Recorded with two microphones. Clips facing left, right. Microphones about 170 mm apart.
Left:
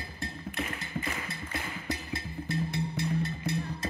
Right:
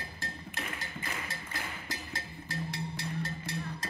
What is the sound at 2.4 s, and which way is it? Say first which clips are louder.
Music: left 6 dB; 90° right.